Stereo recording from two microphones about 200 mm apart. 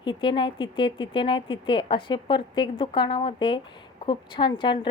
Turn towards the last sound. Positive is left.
turn(degrees=25)  # may be behind; listen again after turning